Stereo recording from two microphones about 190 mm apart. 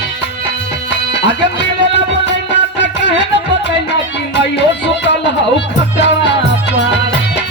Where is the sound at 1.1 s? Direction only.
65° left (ahead or behind).